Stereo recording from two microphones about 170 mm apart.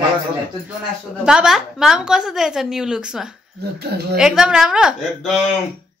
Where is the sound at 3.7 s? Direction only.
70° right (ahead or behind).